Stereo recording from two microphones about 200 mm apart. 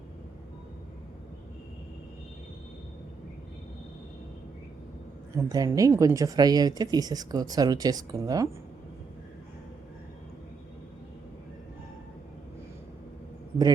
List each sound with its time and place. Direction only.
5.4 s speech: 20° right (ahead or behind)